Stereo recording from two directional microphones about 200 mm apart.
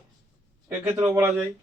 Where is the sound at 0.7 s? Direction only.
10° right (ahead or behind).